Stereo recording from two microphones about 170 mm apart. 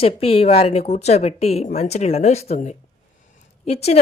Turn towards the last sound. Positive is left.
turn(degrees=35)  # may be behind; listen again after turning